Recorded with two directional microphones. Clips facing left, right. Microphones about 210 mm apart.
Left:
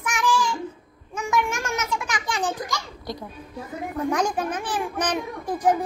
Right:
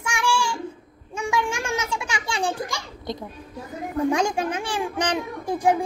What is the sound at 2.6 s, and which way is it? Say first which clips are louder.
Speech: right 1 dB; 25° right (ahead or behind).